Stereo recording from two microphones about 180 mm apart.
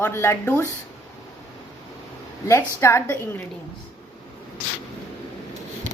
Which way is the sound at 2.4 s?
15° left (ahead or behind).